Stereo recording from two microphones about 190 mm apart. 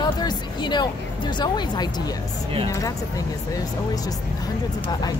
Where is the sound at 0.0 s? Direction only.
20° left (ahead or behind).